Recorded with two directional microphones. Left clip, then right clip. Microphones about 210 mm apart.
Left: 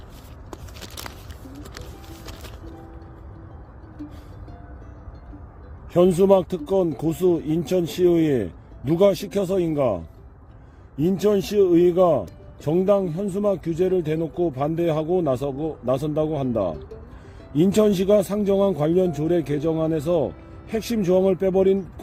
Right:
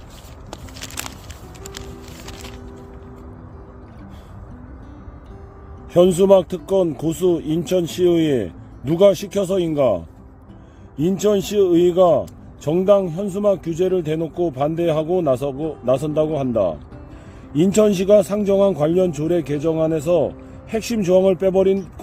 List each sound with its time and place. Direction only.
5.9 s a man's voice: 15° left (ahead or behind)
11.0 s a man's voice: 15° left (ahead or behind)